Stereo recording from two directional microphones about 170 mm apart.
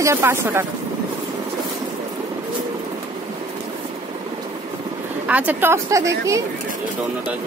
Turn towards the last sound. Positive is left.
turn(degrees=-20)  # may be behind; listen again after turning